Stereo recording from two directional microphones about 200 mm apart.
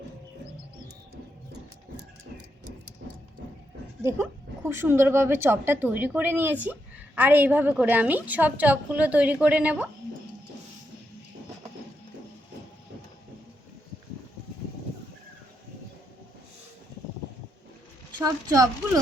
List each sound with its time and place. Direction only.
4.0 s a woman's voice: 10° right (ahead or behind)
18.2 s a woman's voice: 20° right (ahead or behind)